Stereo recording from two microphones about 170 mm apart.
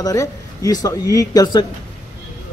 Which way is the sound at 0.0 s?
20° left (ahead or behind).